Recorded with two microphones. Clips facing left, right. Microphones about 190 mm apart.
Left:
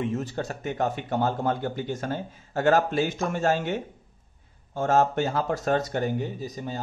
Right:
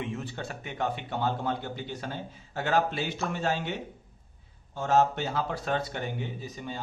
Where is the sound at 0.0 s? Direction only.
40° left (ahead or behind).